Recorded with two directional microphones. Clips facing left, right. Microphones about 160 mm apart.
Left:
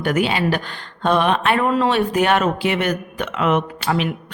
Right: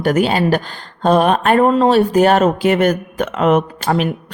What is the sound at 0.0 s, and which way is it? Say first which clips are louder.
Speech: right 4 dB; 40° right (ahead or behind).